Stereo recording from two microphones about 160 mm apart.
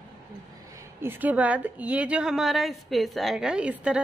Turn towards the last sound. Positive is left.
turn(degrees=-5)  # may be behind; listen again after turning